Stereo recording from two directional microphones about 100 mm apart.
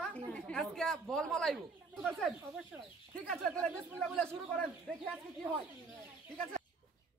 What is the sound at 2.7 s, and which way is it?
Speech, 15° right (ahead or behind).